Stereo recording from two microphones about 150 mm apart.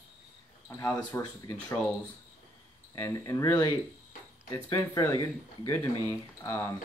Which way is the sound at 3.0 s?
20° left (ahead or behind).